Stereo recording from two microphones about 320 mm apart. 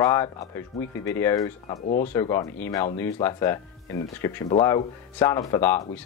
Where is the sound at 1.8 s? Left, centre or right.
Left.